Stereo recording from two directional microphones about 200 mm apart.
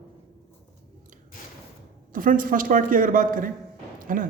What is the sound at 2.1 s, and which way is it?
Speech, 45° right (ahead or behind).